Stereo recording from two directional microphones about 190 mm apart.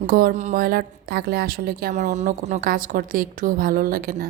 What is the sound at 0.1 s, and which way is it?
A woman's voice, 50° right (ahead or behind).